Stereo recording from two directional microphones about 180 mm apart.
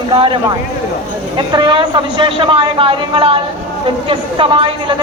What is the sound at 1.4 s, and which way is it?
A man's voice, 25° right (ahead or behind).